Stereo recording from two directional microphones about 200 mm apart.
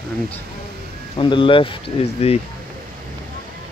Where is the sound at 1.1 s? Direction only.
25° left (ahead or behind).